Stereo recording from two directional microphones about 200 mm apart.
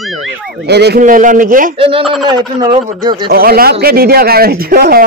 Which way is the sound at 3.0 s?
20° right (ahead or behind).